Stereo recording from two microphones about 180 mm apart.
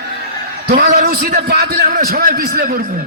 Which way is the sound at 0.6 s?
65° right (ahead or behind).